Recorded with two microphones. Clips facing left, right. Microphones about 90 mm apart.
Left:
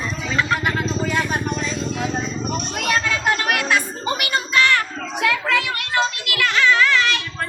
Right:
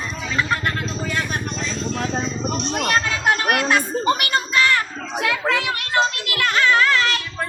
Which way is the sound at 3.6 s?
40° right (ahead or behind).